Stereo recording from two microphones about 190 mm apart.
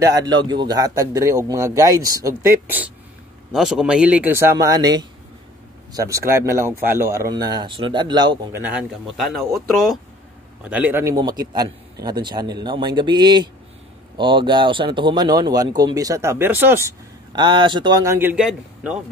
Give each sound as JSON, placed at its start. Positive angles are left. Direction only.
{"t": 0.0, "sound": "speech", "side_deg": -20}
{"t": 8.5, "sound": "a man's voice", "side_deg": -5}